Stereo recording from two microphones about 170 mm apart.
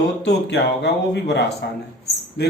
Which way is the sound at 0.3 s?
80° left.